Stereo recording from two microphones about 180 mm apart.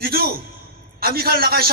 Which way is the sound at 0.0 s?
60° right (ahead or behind).